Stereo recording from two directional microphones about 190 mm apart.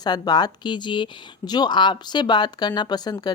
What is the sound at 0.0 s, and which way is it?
Speech, 20° left (ahead or behind).